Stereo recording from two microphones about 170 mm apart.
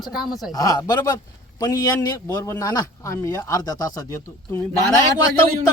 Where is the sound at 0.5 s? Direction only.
20° left (ahead or behind).